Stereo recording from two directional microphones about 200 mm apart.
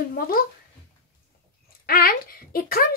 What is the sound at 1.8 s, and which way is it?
Speech, 50° left (ahead or behind).